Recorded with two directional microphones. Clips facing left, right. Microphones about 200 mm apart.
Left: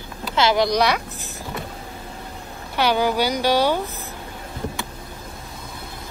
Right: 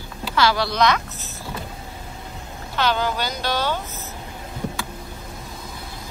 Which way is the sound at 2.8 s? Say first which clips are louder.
Left 3 dB; 10° left (ahead or behind).